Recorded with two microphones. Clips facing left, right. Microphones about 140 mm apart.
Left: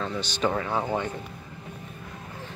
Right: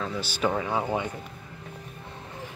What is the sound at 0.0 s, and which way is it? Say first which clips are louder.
Speech: left 1 dB; 5° right (ahead or behind).